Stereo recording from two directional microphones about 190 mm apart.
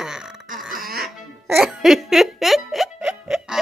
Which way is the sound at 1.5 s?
Centre (ahead or behind).